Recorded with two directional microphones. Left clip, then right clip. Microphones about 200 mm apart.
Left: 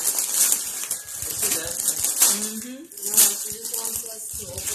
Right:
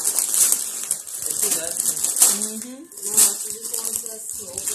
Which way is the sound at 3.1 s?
10° left (ahead or behind).